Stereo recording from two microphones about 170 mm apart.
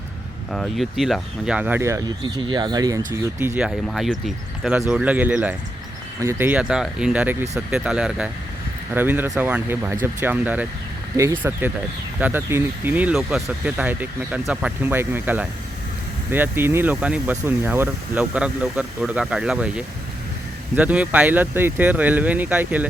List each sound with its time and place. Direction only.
0.5 s speech: centre (ahead or behind)